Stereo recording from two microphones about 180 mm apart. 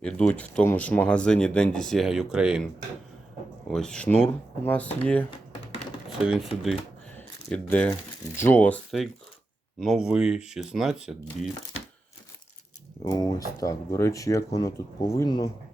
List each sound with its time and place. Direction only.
0.0 s speech: 5° left (ahead or behind)
3.7 s speech: 5° left (ahead or behind)
6.2 s speech: centre (ahead or behind)
13.1 s speech: 20° left (ahead or behind)